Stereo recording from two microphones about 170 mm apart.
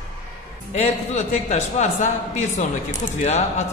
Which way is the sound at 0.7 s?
40° left (ahead or behind).